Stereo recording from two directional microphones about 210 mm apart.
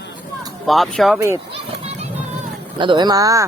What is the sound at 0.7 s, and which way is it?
Speech, centre (ahead or behind).